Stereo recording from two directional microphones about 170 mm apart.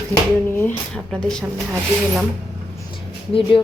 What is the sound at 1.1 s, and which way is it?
Speech, 5° left (ahead or behind).